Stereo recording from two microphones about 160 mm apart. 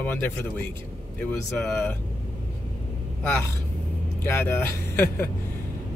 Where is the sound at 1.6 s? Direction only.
5° left (ahead or behind).